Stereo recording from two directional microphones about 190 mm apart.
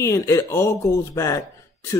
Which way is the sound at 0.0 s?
15° left (ahead or behind).